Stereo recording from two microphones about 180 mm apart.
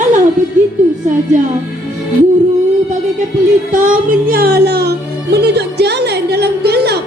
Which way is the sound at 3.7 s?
45° right (ahead or behind).